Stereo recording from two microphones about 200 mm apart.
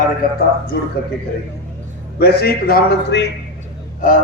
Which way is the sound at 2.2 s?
50° left (ahead or behind).